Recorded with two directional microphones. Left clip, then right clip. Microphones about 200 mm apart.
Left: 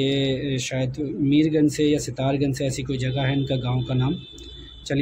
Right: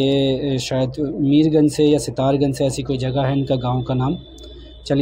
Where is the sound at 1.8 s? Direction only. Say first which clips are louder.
Right 6 dB; 15° right (ahead or behind).